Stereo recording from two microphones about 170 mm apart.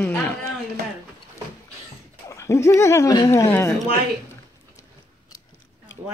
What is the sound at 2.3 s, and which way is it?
Speech, 15° left (ahead or behind).